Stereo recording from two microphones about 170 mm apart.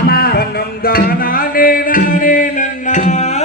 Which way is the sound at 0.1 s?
65° left (ahead or behind).